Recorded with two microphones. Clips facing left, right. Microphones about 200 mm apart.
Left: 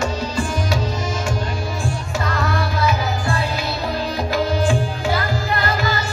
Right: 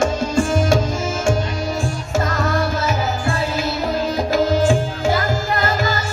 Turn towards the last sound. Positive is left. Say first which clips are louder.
# right 2 dB
turn(degrees=-45)  # may be behind; listen again after turning